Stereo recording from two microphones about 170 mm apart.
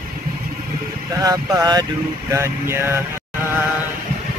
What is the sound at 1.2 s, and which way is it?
Speech, 20° right (ahead or behind).